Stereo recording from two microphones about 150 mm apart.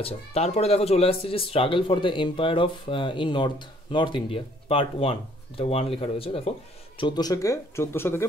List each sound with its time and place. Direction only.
0.0 s speech: 45° left (ahead or behind); by 8.3 s 15° left (ahead or behind)